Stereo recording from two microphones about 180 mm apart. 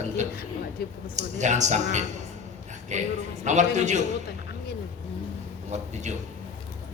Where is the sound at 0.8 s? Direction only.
60° left (ahead or behind).